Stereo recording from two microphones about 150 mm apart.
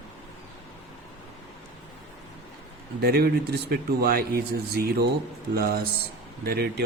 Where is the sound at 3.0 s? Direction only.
90° right.